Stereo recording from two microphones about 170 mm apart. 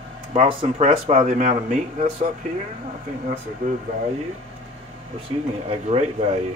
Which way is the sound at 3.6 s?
50° right (ahead or behind).